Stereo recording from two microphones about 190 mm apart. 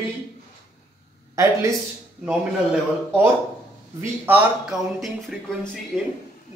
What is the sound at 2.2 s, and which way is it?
A man's voice, 5° right (ahead or behind).